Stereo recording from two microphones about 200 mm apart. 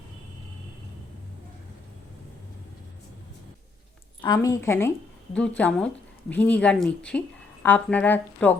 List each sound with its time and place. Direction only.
4.2 s a woman's voice: 20° left (ahead or behind)